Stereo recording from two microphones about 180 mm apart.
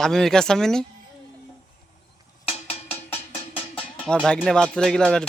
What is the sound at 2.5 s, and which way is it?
Music, 35° left (ahead or behind).